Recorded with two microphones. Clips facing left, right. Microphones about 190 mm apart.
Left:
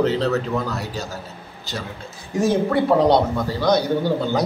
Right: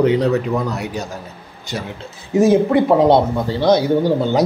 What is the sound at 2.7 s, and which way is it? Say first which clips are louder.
Speech: right 4 dB; 20° right (ahead or behind).